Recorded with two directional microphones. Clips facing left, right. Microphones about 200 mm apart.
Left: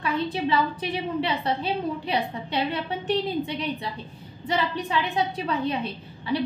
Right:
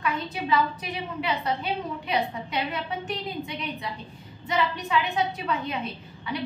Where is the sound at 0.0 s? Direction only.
30° left (ahead or behind).